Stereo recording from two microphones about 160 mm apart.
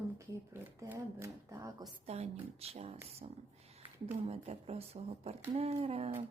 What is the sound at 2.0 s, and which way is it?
Speech, 40° right (ahead or behind).